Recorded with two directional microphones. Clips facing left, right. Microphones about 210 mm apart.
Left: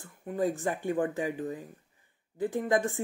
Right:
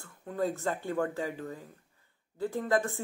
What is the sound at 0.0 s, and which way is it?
Speech, 15° left (ahead or behind).